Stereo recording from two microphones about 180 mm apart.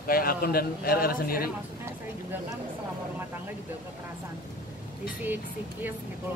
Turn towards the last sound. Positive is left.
turn(degrees=-10)  # may be behind; listen again after turning